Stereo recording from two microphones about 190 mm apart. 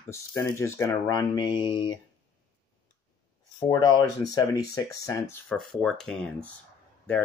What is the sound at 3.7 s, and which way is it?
Speech, 20° left (ahead or behind).